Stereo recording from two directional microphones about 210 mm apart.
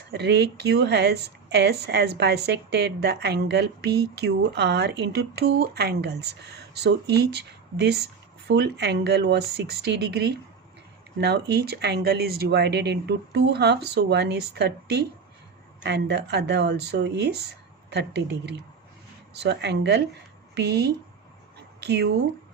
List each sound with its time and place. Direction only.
0.1 s speech: 50° right (ahead or behind)